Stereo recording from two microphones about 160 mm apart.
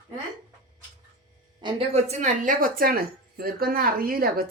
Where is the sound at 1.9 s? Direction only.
50° right (ahead or behind); by 4.5 s 65° right (ahead or behind).